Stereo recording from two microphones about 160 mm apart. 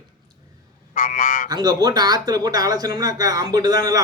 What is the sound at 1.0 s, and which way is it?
Frog, 55° left (ahead or behind).